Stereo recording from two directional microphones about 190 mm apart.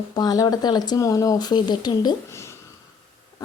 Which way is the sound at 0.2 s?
20° left (ahead or behind).